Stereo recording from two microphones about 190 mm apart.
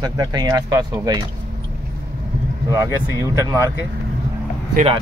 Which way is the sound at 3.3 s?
15° right (ahead or behind).